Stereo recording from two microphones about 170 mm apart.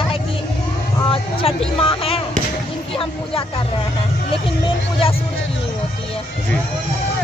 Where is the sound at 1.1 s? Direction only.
35° left (ahead or behind).